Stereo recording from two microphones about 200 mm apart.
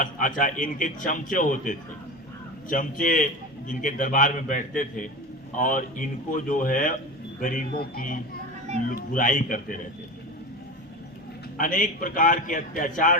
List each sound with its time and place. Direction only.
0.0 s a man's voice: 40° left (ahead or behind)
11.5 s a man's voice: 40° left (ahead or behind)